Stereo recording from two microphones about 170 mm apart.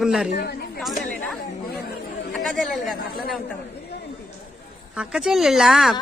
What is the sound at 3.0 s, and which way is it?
Speech, 60° left (ahead or behind).